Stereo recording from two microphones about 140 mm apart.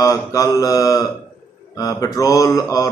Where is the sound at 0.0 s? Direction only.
20° left (ahead or behind).